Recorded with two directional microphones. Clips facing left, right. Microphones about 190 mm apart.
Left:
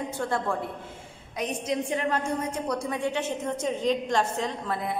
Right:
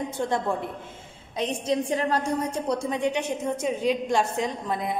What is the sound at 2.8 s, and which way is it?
A woman's voice, 20° right (ahead or behind).